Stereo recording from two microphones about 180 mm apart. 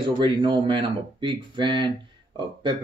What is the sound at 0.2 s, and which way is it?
Speech, 25° right (ahead or behind).